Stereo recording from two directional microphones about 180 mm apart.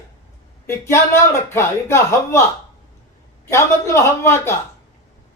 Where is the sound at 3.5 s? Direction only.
15° left (ahead or behind).